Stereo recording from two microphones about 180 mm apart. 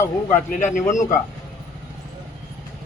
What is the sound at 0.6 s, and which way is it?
Speech, 45° left (ahead or behind).